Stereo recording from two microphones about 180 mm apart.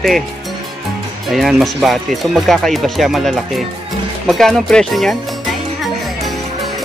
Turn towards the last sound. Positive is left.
turn(degrees=0)  # may be behind; listen again after turning